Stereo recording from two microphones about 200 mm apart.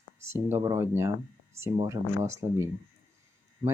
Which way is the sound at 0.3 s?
10° right (ahead or behind).